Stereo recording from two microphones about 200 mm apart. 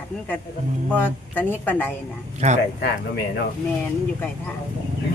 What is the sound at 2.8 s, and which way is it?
Speech, 55° left (ahead or behind).